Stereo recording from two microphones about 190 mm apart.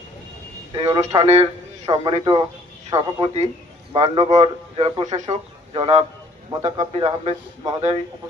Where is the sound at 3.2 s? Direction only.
35° right (ahead or behind).